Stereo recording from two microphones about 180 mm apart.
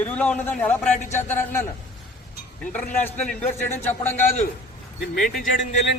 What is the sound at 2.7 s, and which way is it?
A man's voice, 10° left (ahead or behind).